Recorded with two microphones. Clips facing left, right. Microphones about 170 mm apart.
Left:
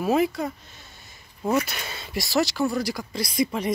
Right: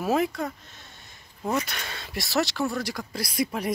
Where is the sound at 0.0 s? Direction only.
Centre (ahead or behind).